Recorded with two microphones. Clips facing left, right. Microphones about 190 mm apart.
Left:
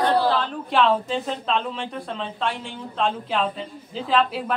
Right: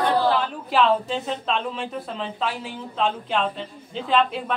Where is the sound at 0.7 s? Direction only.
Centre (ahead or behind).